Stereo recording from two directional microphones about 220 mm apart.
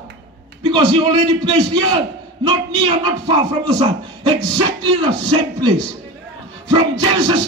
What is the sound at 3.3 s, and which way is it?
A man's voice, 20° right (ahead or behind).